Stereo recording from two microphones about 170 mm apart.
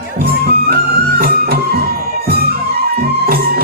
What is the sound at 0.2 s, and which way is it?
Music, 65° right (ahead or behind).